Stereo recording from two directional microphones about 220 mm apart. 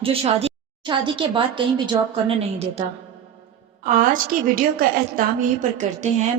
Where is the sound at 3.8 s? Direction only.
40° right (ahead or behind).